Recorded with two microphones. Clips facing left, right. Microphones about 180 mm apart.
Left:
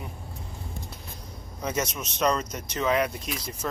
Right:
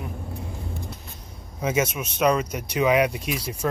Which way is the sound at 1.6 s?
5° right (ahead or behind).